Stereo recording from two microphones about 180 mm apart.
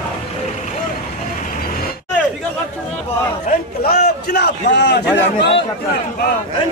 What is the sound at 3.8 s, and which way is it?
A man's voice, 60° left (ahead or behind).